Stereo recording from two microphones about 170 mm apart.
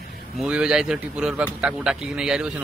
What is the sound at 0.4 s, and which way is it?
A man's voice, 5° right (ahead or behind).